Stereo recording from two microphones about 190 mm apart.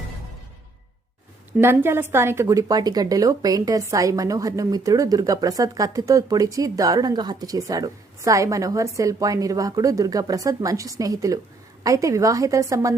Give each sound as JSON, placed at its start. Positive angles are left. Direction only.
{"t": 1.5, "sound": "a woman's voice", "side_deg": -10}